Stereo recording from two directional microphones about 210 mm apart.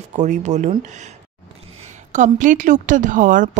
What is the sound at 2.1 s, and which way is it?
Speech, 35° right (ahead or behind).